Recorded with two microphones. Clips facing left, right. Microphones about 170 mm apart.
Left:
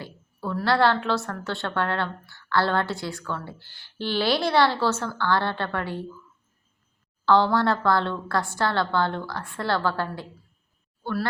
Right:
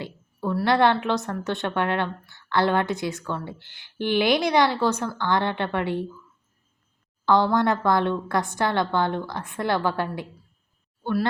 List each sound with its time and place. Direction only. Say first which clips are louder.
0.0 s a woman's voice: right 4 dB; 15° right (ahead or behind)
7.3 s a woman's voice: even; 15° right (ahead or behind)